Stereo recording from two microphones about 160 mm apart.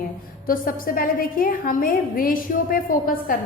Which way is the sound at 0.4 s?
60° left (ahead or behind).